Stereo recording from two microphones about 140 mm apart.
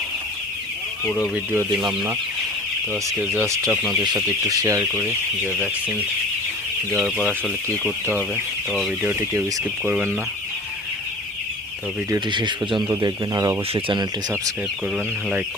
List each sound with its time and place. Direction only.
1.9 s speech: 15° right (ahead or behind)
4.0 s speech: 30° right (ahead or behind)
4.9 s speech: 10° right (ahead or behind)
7.0 s speech: centre (ahead or behind)
8.7 s speech: centre (ahead or behind)
12.1 s speech: 35° right (ahead or behind)
14.9 s speech: 5° right (ahead or behind)